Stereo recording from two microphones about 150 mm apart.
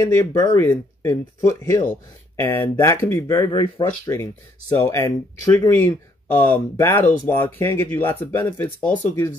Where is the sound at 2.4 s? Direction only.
15° left (ahead or behind).